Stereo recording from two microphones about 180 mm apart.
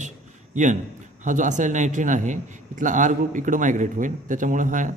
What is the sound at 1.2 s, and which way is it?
A man's voice, 45° right (ahead or behind).